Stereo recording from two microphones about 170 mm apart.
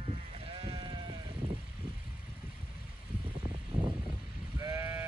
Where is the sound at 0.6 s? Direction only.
35° right (ahead or behind).